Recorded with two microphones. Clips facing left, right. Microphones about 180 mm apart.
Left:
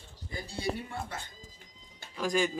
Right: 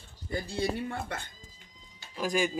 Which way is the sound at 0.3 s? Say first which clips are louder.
Right 4 dB; 60° right (ahead or behind).